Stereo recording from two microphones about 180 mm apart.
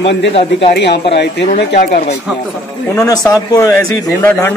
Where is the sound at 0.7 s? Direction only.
65° left (ahead or behind).